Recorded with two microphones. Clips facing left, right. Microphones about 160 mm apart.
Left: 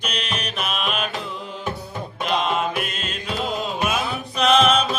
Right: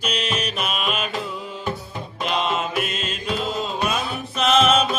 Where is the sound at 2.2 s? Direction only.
Centre (ahead or behind).